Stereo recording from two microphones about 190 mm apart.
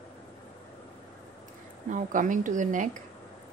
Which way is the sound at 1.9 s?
40° right (ahead or behind).